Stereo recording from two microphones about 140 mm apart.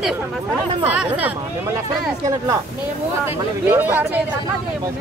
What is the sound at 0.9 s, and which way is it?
Speech, 10° right (ahead or behind).